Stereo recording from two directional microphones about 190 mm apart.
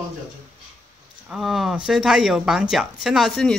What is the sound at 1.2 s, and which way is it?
Speech, centre (ahead or behind).